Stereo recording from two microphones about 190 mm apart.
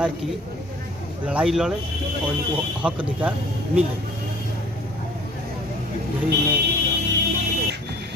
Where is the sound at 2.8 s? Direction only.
5° right (ahead or behind).